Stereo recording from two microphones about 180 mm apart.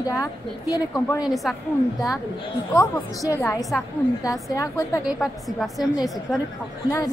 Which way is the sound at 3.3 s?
20° left (ahead or behind).